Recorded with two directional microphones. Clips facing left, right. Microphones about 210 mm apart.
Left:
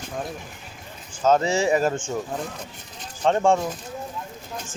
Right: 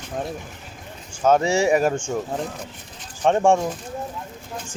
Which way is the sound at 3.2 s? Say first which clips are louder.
Right 2 dB; 15° right (ahead or behind).